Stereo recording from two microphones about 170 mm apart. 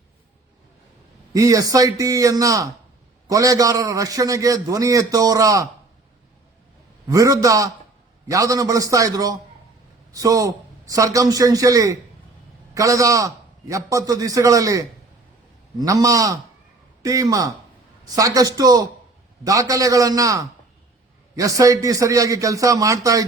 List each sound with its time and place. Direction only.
1.3 s a man's voice: 20° right (ahead or behind)
7.1 s a man's voice: 20° right (ahead or behind)